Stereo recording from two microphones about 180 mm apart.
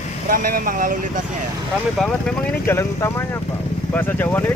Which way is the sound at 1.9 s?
5° left (ahead or behind).